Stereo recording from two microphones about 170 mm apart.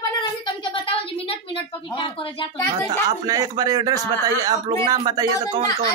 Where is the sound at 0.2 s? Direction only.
30° left (ahead or behind).